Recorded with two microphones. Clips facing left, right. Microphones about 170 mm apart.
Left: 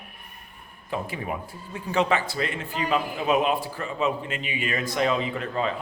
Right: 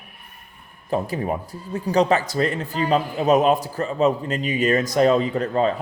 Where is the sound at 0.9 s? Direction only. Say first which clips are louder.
Right 7 dB; 40° right (ahead or behind).